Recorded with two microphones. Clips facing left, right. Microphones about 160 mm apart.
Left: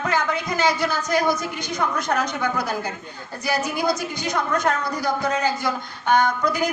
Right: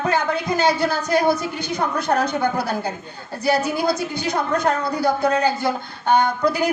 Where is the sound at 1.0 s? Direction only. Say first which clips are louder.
Right 3 dB; 30° right (ahead or behind).